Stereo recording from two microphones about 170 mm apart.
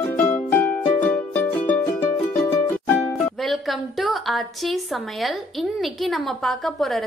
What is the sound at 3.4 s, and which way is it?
A woman's voice, centre (ahead or behind).